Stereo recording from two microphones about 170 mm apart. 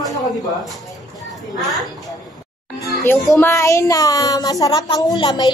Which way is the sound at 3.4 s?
15° left (ahead or behind).